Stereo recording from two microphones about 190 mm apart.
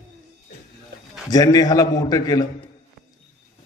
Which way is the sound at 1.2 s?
20° left (ahead or behind).